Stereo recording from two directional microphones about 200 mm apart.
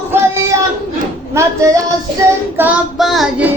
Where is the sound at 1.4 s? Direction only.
15° right (ahead or behind).